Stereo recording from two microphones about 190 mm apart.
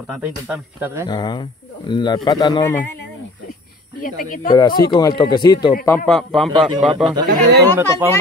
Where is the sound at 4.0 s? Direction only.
45° left (ahead or behind).